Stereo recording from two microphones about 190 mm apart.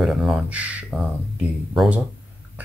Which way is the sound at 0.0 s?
Centre (ahead or behind).